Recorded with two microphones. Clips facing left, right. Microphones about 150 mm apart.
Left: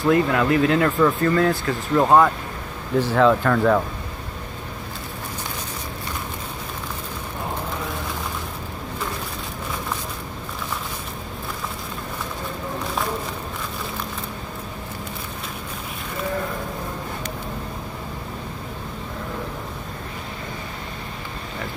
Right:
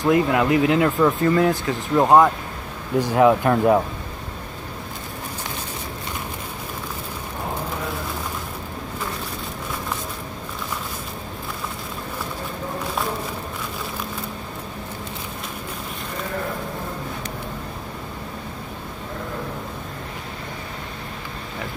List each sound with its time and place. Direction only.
0.0 s speech: 15° right (ahead or behind)